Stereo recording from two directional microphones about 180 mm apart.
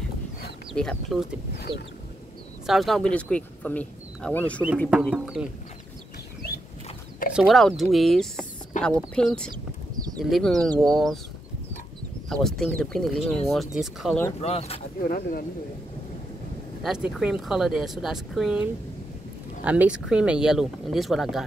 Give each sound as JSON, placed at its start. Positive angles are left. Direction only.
{"t": 0.7, "sound": "speech", "side_deg": 0}
{"t": 1.7, "sound": "a sound", "side_deg": -25}
{"t": 2.6, "sound": "speech", "side_deg": 0}
{"t": 7.3, "sound": "speech", "side_deg": 0}
{"t": 12.3, "sound": "speech", "side_deg": 0}
{"t": 14.4, "sound": "speech", "side_deg": 35}
{"t": 16.8, "sound": "speech", "side_deg": -5}